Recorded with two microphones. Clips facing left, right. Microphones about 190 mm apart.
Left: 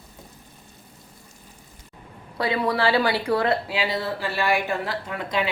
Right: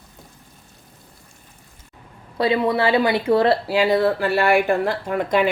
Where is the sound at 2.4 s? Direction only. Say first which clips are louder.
Right 4 dB; 25° right (ahead or behind).